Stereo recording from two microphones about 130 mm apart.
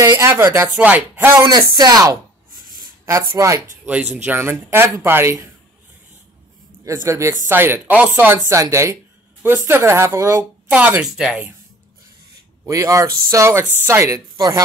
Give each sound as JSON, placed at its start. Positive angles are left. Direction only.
{"t": 0.0, "sound": "speech", "side_deg": -20}
{"t": 1.5, "sound": "speech", "side_deg": -30}
{"t": 6.8, "sound": "speech", "side_deg": -25}
{"t": 8.5, "sound": "speech", "side_deg": -20}
{"t": 10.7, "sound": "speech", "side_deg": -10}
{"t": 12.6, "sound": "speech", "side_deg": -25}